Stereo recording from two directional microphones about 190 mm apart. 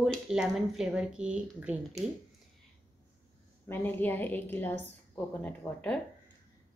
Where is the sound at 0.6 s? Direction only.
5° right (ahead or behind).